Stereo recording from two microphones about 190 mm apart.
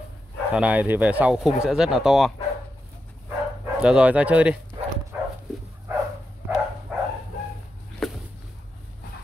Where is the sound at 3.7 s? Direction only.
5° right (ahead or behind).